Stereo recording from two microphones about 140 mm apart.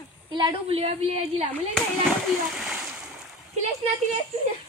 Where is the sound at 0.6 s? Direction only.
45° right (ahead or behind).